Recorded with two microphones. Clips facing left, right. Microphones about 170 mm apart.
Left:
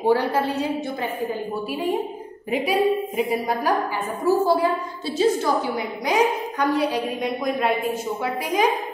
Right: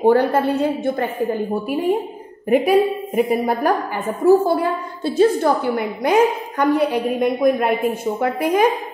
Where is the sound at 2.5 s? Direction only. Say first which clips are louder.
Right 5 dB; 55° right (ahead or behind).